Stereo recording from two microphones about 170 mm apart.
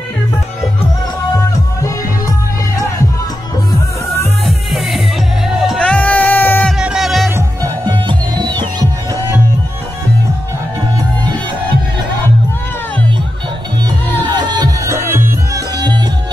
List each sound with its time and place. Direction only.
4.5 s music: centre (ahead or behind)
6.8 s music: 5° right (ahead or behind)
7.2 s music: 15° right (ahead or behind)
8.1 s music: 25° right (ahead or behind)
14.3 s music: 25° right (ahead or behind)